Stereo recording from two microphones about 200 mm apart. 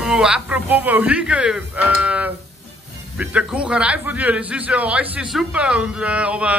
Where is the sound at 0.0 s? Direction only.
5° right (ahead or behind).